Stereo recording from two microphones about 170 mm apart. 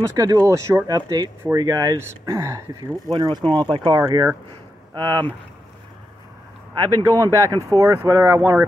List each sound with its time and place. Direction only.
0.0 s speech: 20° right (ahead or behind)
6.7 s speech: 20° right (ahead or behind)